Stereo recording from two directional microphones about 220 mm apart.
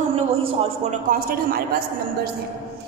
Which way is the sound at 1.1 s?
40° right (ahead or behind).